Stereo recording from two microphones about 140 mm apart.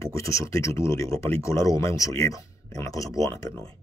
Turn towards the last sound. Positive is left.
turn(degrees=20)  # may be behind; listen again after turning